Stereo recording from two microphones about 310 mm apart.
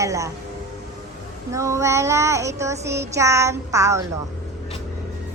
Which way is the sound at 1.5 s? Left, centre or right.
Centre.